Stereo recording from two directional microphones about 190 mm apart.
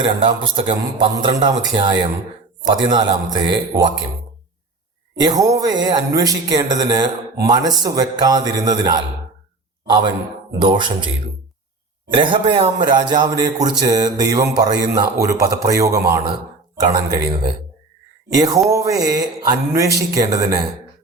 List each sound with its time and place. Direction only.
0.0 s a man's voice: 25° right (ahead or behind)
5.1 s a man's voice: 20° right (ahead or behind)
10.6 s a man's voice: 25° right (ahead or behind)